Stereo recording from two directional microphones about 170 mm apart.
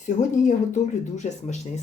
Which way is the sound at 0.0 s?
45° left (ahead or behind).